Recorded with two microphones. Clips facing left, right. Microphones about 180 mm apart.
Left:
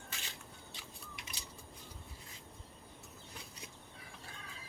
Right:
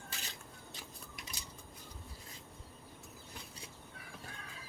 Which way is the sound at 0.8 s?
40° right (ahead or behind).